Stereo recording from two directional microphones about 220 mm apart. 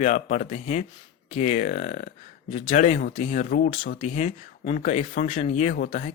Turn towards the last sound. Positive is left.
turn(degrees=40)  # may be behind; listen again after turning